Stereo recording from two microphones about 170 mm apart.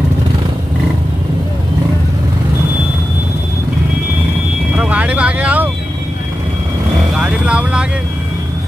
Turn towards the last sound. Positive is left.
turn(degrees=-5)  # may be behind; listen again after turning